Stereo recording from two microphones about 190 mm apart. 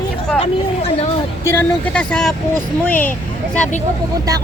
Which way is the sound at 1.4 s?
10° left (ahead or behind).